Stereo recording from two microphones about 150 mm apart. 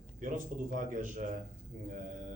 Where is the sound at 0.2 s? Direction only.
60° right (ahead or behind).